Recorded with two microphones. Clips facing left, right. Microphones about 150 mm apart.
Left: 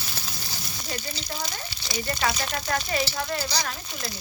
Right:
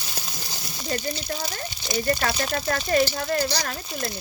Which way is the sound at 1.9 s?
50° right (ahead or behind).